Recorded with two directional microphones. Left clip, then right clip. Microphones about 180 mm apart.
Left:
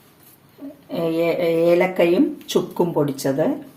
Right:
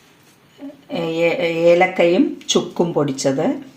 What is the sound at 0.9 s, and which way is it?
A woman's voice, 35° right (ahead or behind).